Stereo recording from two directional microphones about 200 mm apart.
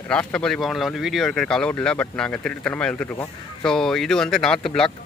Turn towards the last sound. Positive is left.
turn(degrees=5)  # may be behind; listen again after turning